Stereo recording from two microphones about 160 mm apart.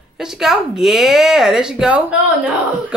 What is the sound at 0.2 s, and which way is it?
A woman's voice, 5° right (ahead or behind).